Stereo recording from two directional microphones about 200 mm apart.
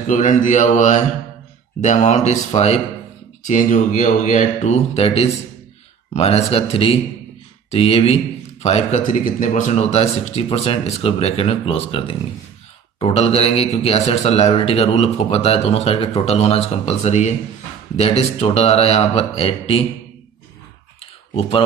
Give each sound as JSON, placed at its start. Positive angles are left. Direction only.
{"t": 0.0, "sound": "a man's voice", "side_deg": 40}
{"t": 21.0, "sound": "computer keyboard", "side_deg": 30}